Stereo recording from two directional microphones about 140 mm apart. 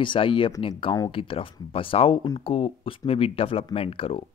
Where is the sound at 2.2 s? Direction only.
30° left (ahead or behind).